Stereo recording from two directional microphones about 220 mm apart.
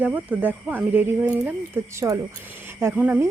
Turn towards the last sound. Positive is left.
turn(degrees=-10)  # may be behind; listen again after turning